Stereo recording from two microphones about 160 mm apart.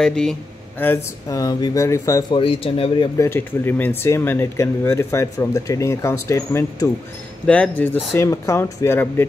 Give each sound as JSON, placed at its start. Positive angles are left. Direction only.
{"t": 0.0, "sound": "speech", "side_deg": 5}
{"t": 2.3, "sound": "speech", "side_deg": 35}
{"t": 3.2, "sound": "speech", "side_deg": 15}
{"t": 7.4, "sound": "speech", "side_deg": 10}